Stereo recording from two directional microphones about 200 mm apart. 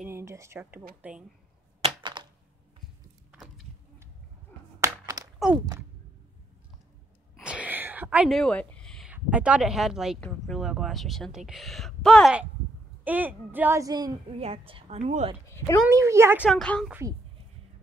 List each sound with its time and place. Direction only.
0.0 s speech: 15° right (ahead or behind)
1.8 s typewriter: 25° right (ahead or behind)
3.3 s a sound: centre (ahead or behind)
4.7 s a sound: 15° right (ahead or behind)
7.3 s a woman's voice: 5° right (ahead or behind); by 15.3 s 35° right (ahead or behind)
15.5 s speech: 15° left (ahead or behind)
15.9 s speech: 15° right (ahead or behind)
16.4 s a woman's voice: 5° left (ahead or behind)